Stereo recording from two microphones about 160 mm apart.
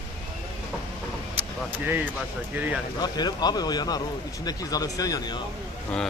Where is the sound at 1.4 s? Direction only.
10° right (ahead or behind).